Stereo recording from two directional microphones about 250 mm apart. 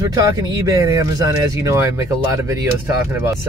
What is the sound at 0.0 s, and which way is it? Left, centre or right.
Speech, centre.